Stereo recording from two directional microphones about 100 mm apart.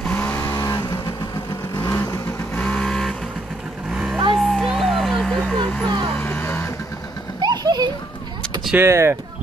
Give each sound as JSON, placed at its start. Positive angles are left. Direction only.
{"t": 0.1, "sound": "vehicle", "side_deg": 20}
{"t": 1.8, "sound": "vehicle", "side_deg": 30}
{"t": 2.5, "sound": "vehicle", "side_deg": 15}
{"t": 3.9, "sound": "vehicle", "side_deg": -5}
{"t": 4.4, "sound": "music", "side_deg": 0}
{"t": 6.2, "sound": "music", "side_deg": 15}
{"t": 7.3, "sound": "a sound", "side_deg": -45}
{"t": 8.7, "sound": "speech", "side_deg": -25}